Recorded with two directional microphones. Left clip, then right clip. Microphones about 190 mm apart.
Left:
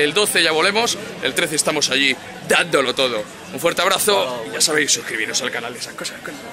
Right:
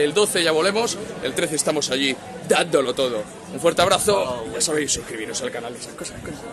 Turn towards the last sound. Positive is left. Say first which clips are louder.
# left 6 dB
turn(degrees=0)  # may be behind; listen again after turning